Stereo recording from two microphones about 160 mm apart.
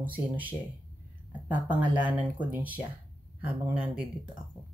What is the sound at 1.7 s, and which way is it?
Speech, 30° right (ahead or behind).